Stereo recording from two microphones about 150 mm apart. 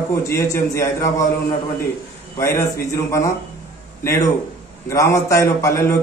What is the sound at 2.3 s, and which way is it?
Speech, 20° left (ahead or behind).